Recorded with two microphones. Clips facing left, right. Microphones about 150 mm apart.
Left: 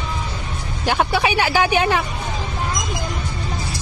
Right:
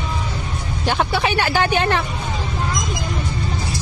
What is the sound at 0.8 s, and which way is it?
Vehicle, 5° left (ahead or behind).